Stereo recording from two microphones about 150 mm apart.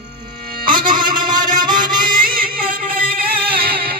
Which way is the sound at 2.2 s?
70° right (ahead or behind).